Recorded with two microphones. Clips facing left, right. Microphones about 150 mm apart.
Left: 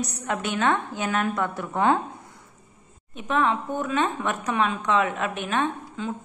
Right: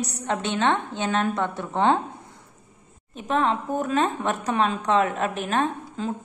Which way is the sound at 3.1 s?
35° right (ahead or behind).